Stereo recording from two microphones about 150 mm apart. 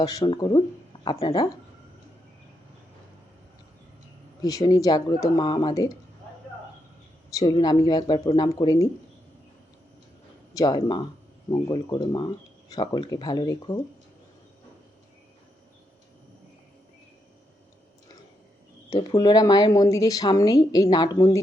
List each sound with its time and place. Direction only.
0.0 s speech: 25° left (ahead or behind)
4.4 s speech: 25° left (ahead or behind)
7.9 s speech: 30° left (ahead or behind)
10.5 s speech: 25° left (ahead or behind)
18.9 s speech: 25° left (ahead or behind)